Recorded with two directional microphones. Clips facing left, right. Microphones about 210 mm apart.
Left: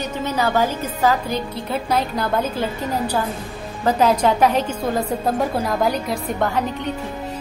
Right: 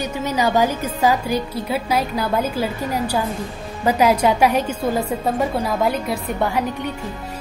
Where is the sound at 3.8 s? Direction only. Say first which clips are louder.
Right 1 dB; 10° right (ahead or behind).